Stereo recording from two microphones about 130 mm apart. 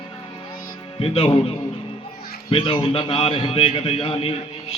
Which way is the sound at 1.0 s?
50° left (ahead or behind).